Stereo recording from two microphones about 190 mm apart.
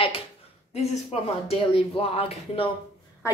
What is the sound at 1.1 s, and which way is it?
A woman's voice, 35° left (ahead or behind).